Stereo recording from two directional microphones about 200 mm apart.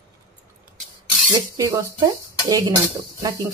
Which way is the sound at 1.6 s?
15° right (ahead or behind).